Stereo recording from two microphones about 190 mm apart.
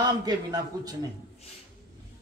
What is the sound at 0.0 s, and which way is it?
Speech, 20° right (ahead or behind).